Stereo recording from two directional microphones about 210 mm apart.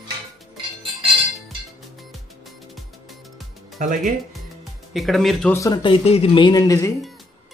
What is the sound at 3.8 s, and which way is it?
Speech, 40° right (ahead or behind).